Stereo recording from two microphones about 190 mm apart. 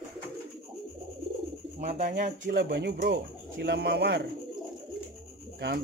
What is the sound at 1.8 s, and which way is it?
Speech, 45° right (ahead or behind).